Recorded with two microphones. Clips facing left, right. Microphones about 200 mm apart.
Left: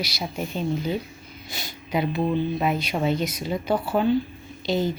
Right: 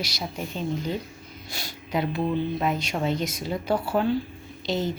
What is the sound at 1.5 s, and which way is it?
Speech, centre (ahead or behind).